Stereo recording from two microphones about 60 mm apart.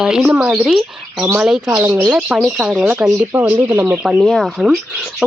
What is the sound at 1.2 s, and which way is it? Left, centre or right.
Speech, right.